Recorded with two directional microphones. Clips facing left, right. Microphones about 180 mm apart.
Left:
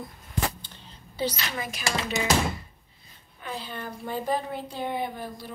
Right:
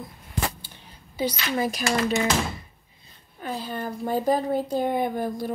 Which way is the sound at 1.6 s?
40° right (ahead or behind).